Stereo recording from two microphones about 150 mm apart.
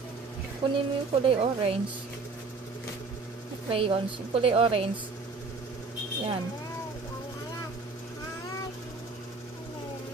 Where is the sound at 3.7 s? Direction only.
40° right (ahead or behind).